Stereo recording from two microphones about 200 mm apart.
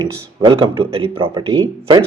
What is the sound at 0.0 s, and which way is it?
Speech, 25° right (ahead or behind).